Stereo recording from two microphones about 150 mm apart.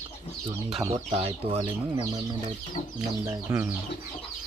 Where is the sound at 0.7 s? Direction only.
40° right (ahead or behind).